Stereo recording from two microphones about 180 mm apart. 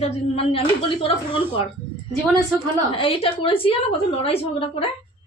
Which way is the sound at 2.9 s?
30° left (ahead or behind).